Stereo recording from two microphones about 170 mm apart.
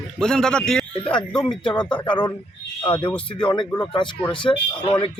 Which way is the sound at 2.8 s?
10° left (ahead or behind).